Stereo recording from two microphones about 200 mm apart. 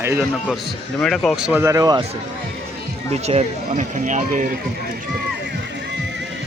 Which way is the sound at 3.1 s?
30° right (ahead or behind).